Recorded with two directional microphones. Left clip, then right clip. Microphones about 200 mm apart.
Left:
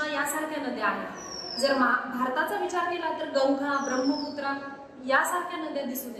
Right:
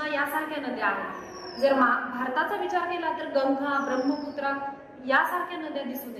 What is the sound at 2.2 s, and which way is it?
A woman's voice, 5° right (ahead or behind).